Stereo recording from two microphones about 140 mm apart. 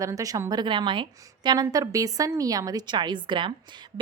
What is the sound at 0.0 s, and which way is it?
A woman's voice, 25° right (ahead or behind).